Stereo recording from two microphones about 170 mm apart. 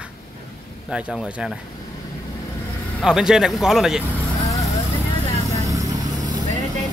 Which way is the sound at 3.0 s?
5° right (ahead or behind).